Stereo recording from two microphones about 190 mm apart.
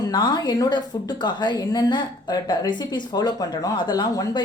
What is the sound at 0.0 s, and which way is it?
A woman's voice, 20° left (ahead or behind).